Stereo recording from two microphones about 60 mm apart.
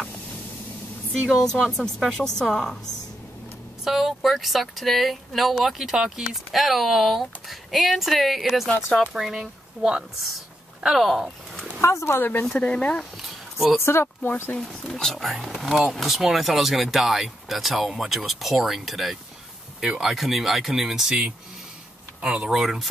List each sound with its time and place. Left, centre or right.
1.3 s speech: centre
1.6 s speech: centre
2.1 s speech: centre
3.8 s speech: centre
11.8 s speech: left
12.2 s speech: left
12.5 s speech: centre
13.2 s a sound: centre
13.7 s speech: left
14.6 s speech: centre